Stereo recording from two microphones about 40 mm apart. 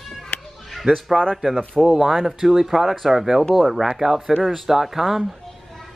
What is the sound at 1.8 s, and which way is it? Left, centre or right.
Speech, centre.